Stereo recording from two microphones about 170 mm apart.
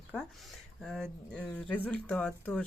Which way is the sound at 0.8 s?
Centre (ahead or behind).